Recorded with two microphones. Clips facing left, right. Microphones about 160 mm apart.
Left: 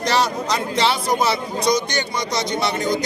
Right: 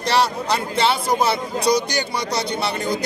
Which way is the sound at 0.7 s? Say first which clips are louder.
Even; 30° right (ahead or behind).